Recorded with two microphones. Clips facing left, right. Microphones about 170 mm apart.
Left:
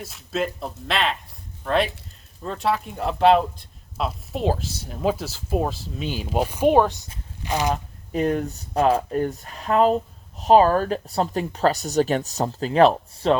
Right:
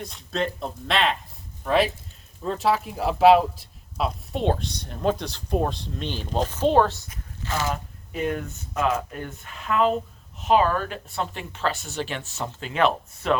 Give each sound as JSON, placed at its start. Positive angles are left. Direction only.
{"t": 0.0, "sound": "speech", "side_deg": 5}
{"t": 7.7, "sound": "speech", "side_deg": 40}